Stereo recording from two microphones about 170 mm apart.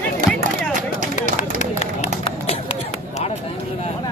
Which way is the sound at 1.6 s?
40° left (ahead or behind).